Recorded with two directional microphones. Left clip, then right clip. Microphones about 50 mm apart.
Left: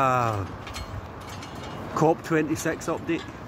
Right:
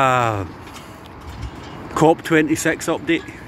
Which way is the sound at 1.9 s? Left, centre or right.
Right.